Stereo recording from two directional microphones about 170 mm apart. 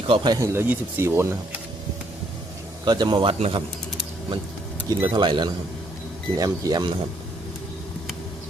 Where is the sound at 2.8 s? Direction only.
25° right (ahead or behind).